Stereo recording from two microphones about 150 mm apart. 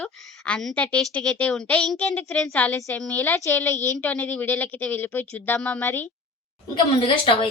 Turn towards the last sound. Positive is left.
turn(degrees=35)  # may be behind; listen again after turning